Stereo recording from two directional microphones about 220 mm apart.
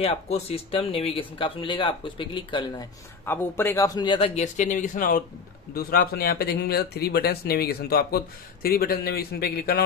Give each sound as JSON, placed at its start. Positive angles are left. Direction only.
{"t": 0.0, "sound": "speech", "side_deg": 25}
{"t": 3.3, "sound": "speech", "side_deg": 10}